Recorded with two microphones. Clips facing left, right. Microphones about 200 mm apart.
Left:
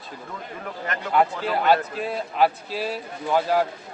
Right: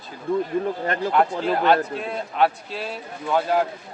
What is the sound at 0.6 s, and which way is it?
Speech, 30° right (ahead or behind).